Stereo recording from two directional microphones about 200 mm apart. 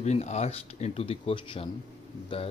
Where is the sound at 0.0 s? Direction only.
35° left (ahead or behind).